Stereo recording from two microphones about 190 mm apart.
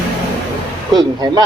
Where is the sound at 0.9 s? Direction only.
20° right (ahead or behind).